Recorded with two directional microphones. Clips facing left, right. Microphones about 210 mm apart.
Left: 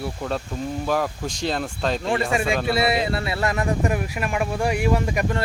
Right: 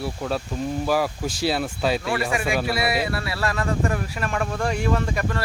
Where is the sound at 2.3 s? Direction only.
25° left (ahead or behind).